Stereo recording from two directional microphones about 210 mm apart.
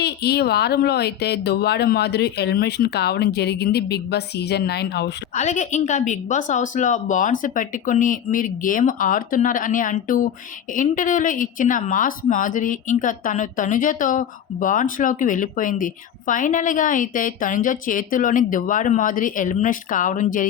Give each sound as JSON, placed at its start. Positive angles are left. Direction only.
{"t": 0.0, "sound": "speech", "side_deg": 50}
{"t": 5.3, "sound": "speech", "side_deg": 35}